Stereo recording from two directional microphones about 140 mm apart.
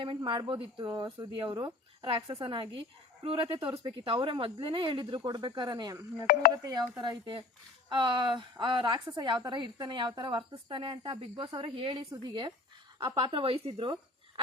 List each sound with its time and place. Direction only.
0.2 s speech: 35° right (ahead or behind)